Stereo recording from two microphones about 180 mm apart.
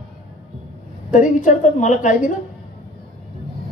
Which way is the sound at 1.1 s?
45° left (ahead or behind).